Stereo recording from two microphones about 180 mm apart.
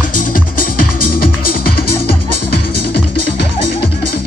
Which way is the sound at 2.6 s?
65° left (ahead or behind).